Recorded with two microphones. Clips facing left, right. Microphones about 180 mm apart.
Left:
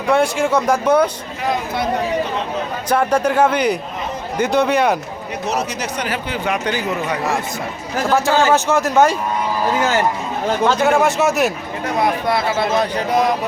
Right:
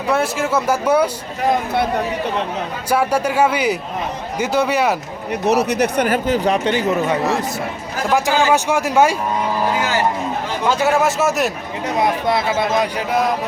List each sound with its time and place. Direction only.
0.1 s speech: 5° right (ahead or behind)
2.9 s speech: 10° right (ahead or behind)
5.3 s speech: 60° right (ahead or behind); by 6.6 s 40° right (ahead or behind)
6.7 s speech: 25° right (ahead or behind)
8.1 s speech: 15° right (ahead or behind)
10.7 s speech: 5° right (ahead or behind)
11.9 s speech: 20° right (ahead or behind); by 13.3 s 5° right (ahead or behind)